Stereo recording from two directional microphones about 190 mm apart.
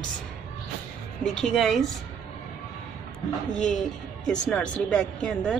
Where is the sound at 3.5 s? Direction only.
5° left (ahead or behind).